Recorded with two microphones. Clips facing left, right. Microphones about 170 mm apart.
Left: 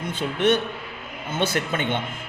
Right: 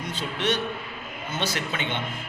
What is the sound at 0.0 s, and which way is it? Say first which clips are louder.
A man's voice: left 6 dB; 55° left (ahead or behind).